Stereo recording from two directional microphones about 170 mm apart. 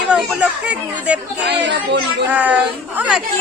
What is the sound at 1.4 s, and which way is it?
Speech, 90° right.